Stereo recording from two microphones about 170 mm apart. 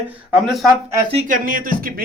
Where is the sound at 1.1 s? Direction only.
40° right (ahead or behind).